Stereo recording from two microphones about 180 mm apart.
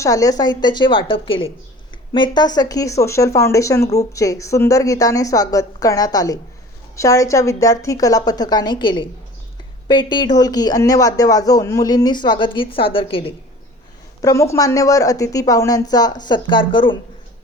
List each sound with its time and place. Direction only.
0.0 s speech: 20° left (ahead or behind)
14.2 s speech: 15° left (ahead or behind)